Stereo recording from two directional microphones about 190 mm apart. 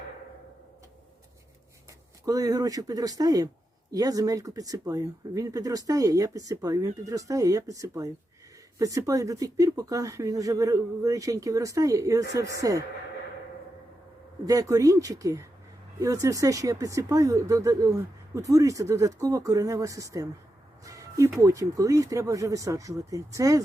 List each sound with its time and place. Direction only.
2.2 s speech: 20° right (ahead or behind)
14.4 s speech: 20° right (ahead or behind)
20.8 s music: 15° right (ahead or behind)
21.4 s speech: 15° right (ahead or behind)